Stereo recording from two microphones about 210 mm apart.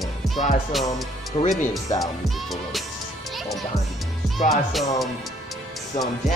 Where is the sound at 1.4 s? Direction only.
30° left (ahead or behind).